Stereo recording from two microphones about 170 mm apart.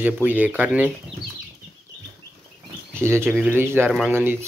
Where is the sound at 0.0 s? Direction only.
10° right (ahead or behind).